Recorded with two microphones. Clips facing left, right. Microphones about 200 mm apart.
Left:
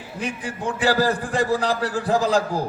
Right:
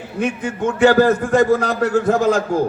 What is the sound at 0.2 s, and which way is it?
A man's voice, 35° left (ahead or behind).